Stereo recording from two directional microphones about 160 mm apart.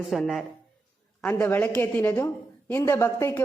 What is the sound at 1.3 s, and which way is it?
A woman's voice, 10° left (ahead or behind).